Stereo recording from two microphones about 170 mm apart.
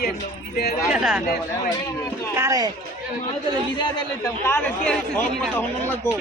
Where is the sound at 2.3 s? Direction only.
20° right (ahead or behind).